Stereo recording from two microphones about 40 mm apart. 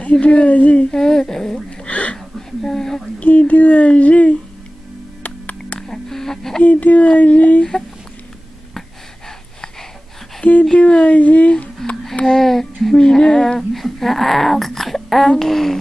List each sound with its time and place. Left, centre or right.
0.0 s speech: left
0.9 s speech: centre
1.9 s a sound: left
2.6 s speech: centre
3.2 s speech: left
5.2 s music: left
5.8 s a sound: centre
6.6 s speech: left
10.4 s speech: left
10.8 s speech: left
11.6 s a sound: left
12.3 s speech: centre